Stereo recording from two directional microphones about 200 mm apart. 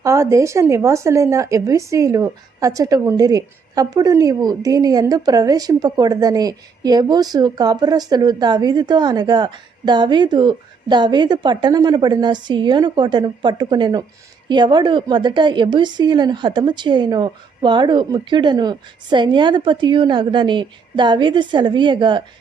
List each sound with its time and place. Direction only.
0.0 s speech: 15° right (ahead or behind)